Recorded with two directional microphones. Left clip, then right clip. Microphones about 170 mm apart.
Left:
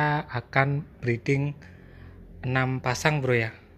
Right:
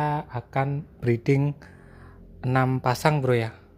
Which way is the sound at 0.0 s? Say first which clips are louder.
Left 1 dB; 5° right (ahead or behind).